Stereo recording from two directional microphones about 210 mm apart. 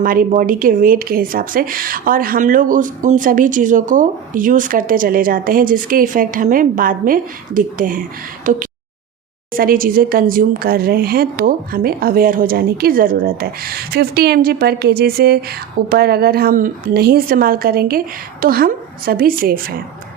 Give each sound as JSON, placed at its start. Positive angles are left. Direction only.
{"t": 0.0, "sound": "speech", "side_deg": -40}
{"t": 9.5, "sound": "a woman's voice", "side_deg": -45}